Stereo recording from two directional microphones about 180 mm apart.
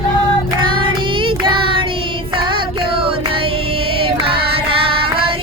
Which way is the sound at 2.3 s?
30° right (ahead or behind).